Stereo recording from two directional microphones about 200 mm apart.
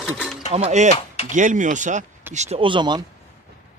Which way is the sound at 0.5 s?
35° right (ahead or behind).